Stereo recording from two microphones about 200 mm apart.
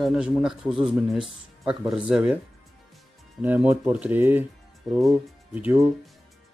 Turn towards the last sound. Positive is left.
turn(degrees=-5)  # may be behind; listen again after turning